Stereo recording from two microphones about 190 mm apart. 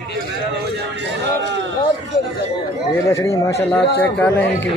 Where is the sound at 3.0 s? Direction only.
15° left (ahead or behind).